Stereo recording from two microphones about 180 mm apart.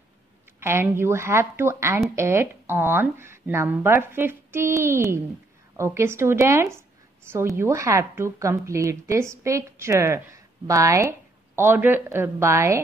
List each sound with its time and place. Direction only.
0.6 s a woman's voice: 15° right (ahead or behind)